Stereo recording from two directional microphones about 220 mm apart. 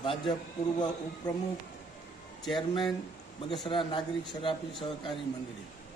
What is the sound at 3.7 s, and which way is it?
Speech, 20° left (ahead or behind).